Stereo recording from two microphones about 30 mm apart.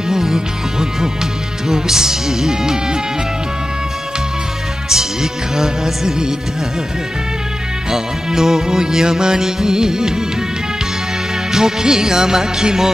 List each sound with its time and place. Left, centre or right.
0.1 s music: centre
4.8 s music: centre
7.9 s speech: centre
8.7 s music: right
9.6 s speech: centre
11.5 s music: right